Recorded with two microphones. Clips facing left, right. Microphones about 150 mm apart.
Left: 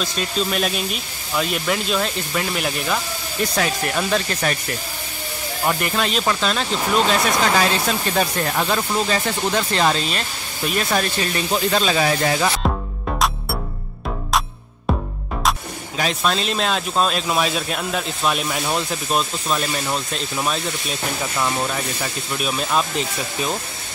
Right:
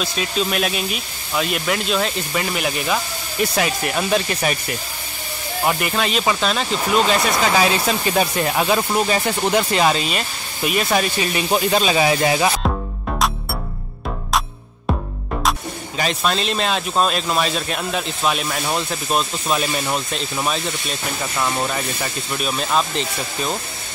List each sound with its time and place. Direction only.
0.0 s speech: 5° right (ahead or behind)
5.7 s speech: 5° right (ahead or behind)
14.9 s music: centre (ahead or behind)
16.0 s speech: centre (ahead or behind)